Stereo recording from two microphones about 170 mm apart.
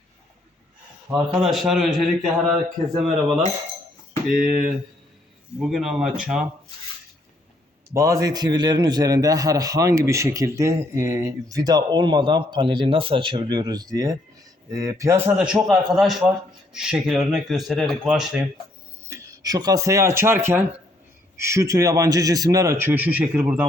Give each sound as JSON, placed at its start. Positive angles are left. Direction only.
{"t": 1.1, "sound": "speech", "side_deg": 0}
{"t": 4.3, "sound": "speech", "side_deg": -55}
{"t": 5.5, "sound": "speech", "side_deg": -5}
{"t": 7.9, "sound": "a man's voice", "side_deg": -20}
{"t": 15.4, "sound": "speech", "side_deg": -5}
{"t": 19.0, "sound": "speech", "side_deg": -20}